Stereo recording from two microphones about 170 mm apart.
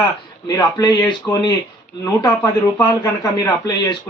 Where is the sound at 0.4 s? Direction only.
20° left (ahead or behind).